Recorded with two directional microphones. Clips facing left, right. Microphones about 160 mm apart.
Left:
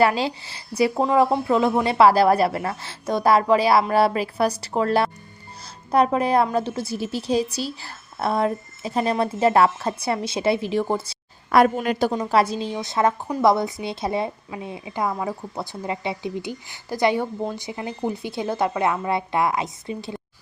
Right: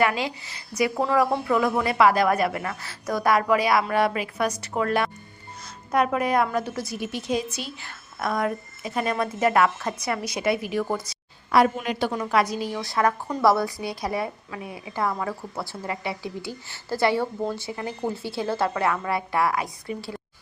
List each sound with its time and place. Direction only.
0.0 s a woman's voice: 30° left (ahead or behind)
11.5 s a woman's voice: 50° left (ahead or behind)
12.1 s speech: 30° left (ahead or behind)